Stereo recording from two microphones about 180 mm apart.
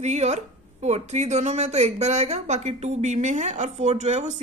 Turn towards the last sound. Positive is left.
turn(degrees=-40)  # may be behind; listen again after turning